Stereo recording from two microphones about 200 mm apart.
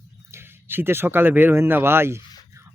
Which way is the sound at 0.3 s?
10° right (ahead or behind).